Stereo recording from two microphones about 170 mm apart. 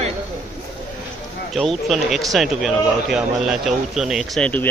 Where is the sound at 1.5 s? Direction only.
Centre (ahead or behind).